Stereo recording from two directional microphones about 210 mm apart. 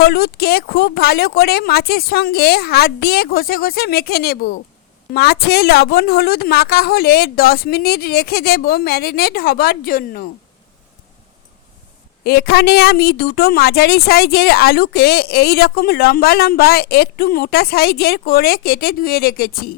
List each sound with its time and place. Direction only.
0.0 s a woman's voice: 45° left (ahead or behind)
12.2 s a woman's voice: 50° left (ahead or behind)